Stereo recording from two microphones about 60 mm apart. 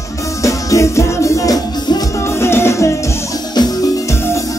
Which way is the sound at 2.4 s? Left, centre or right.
Left.